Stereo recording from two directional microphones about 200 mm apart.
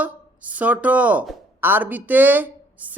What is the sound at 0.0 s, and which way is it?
Speech, 5° right (ahead or behind).